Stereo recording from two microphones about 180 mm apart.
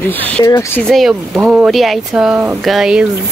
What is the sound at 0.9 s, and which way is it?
Speech, centre (ahead or behind).